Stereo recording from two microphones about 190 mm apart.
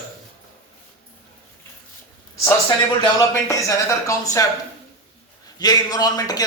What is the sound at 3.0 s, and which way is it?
Speech, 15° left (ahead or behind).